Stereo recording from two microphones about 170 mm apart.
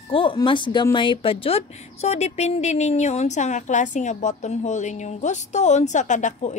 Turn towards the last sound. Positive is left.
turn(degrees=45)  # may be behind; listen again after turning